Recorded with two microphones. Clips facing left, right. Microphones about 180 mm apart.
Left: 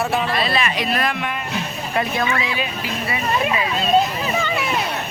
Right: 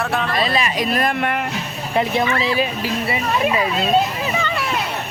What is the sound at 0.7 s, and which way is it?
Speech, 45° right (ahead or behind).